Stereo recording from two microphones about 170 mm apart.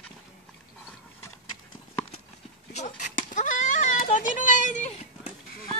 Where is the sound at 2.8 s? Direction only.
50° left (ahead or behind).